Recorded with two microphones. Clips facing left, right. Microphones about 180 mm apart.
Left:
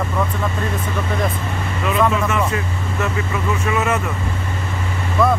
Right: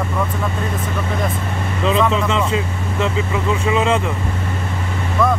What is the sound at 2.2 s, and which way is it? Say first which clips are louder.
Speech: right 1 dB; 20° right (ahead or behind).